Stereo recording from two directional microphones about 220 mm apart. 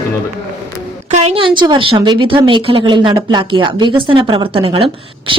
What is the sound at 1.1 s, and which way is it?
A woman's voice, 30° right (ahead or behind).